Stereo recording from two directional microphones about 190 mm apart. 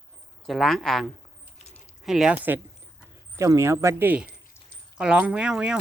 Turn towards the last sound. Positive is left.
turn(degrees=-5)  # may be behind; listen again after turning